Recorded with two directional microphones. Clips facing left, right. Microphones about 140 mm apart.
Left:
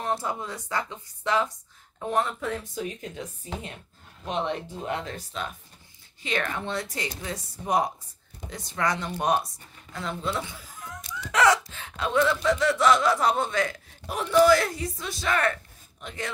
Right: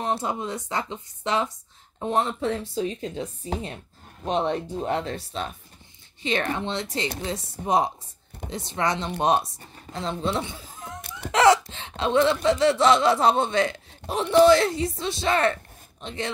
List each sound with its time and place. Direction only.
0.0 s speech: 20° right (ahead or behind)
9.6 s a woman's voice: 35° right (ahead or behind)
11.0 s a sound: 60° right (ahead or behind)
11.3 s speech: 25° right (ahead or behind)